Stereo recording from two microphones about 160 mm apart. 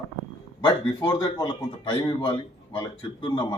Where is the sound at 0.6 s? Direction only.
25° left (ahead or behind).